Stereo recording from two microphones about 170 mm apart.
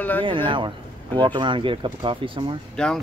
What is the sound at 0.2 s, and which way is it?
Speech, 30° right (ahead or behind).